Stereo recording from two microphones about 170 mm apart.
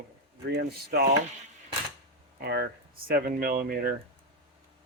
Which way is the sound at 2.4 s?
70° right (ahead or behind).